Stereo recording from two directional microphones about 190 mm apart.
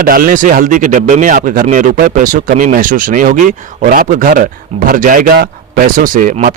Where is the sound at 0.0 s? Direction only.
50° right (ahead or behind).